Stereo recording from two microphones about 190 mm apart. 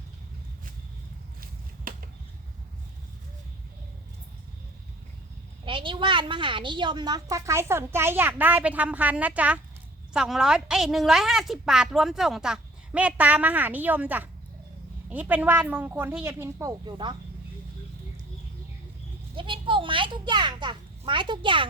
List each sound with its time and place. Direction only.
5.6 s a woman's voice: 25° right (ahead or behind)
19.4 s a child's voice: 25° right (ahead or behind)